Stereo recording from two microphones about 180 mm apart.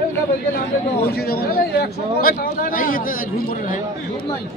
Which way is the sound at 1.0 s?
60° left (ahead or behind).